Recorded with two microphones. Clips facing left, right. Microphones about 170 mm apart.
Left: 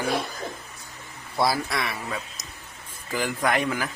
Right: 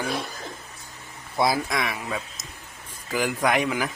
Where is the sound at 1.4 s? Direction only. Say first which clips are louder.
Right 1 dB; 20° right (ahead or behind).